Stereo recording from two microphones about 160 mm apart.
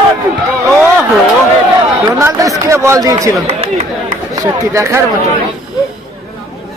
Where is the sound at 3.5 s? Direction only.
40° right (ahead or behind).